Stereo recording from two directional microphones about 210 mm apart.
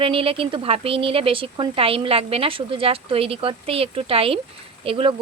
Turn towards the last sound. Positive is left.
turn(degrees=-25)  # may be behind; listen again after turning